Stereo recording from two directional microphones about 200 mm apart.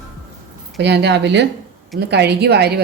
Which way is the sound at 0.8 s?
60° right (ahead or behind).